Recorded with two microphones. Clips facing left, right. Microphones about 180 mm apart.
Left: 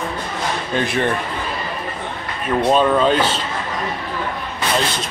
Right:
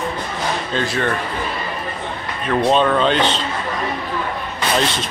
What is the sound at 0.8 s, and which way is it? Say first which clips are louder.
Speech: left 2 dB; 20° left (ahead or behind).